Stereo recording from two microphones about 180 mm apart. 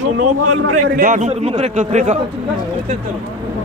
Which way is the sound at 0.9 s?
45° right (ahead or behind).